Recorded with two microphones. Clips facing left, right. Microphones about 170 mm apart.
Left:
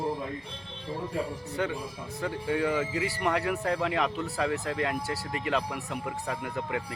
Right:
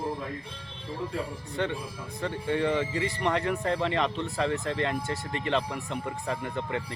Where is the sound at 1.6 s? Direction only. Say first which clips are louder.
Right 1 dB; 5° left (ahead or behind).